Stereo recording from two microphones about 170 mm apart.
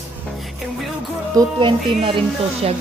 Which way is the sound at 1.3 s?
30° right (ahead or behind).